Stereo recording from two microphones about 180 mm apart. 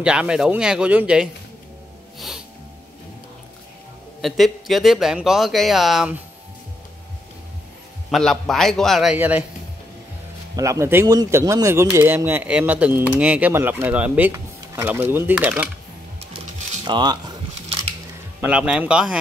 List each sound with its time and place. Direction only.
0.0 s speech: 5° right (ahead or behind)
2.1 s music: centre (ahead or behind)
4.2 s speech: centre (ahead or behind)
8.1 s speech: centre (ahead or behind)
10.5 s a man's voice: 15° right (ahead or behind)
16.8 s biting: 25° right (ahead or behind)
18.4 s a man's voice: 5° right (ahead or behind)